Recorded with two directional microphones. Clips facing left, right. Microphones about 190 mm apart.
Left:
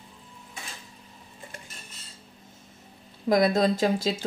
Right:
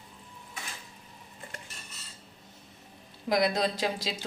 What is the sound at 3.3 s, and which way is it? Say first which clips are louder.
Speech: left 5 dB; 45° left (ahead or behind).